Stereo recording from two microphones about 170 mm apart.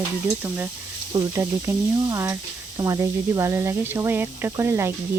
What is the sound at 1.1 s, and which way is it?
Speech, 20° right (ahead or behind).